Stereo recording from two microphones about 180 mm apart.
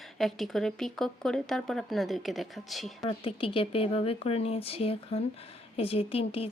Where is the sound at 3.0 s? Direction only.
30° left (ahead or behind).